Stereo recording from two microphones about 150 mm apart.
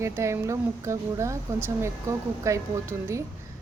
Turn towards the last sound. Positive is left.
turn(degrees=-20)  # may be behind; listen again after turning